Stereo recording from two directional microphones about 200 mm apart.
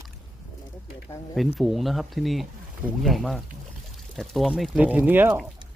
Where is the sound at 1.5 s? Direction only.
Centre (ahead or behind).